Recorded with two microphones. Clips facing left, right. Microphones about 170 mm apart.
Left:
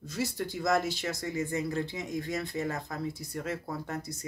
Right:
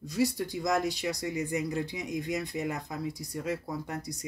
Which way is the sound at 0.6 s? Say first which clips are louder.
Left 1 dB; centre (ahead or behind).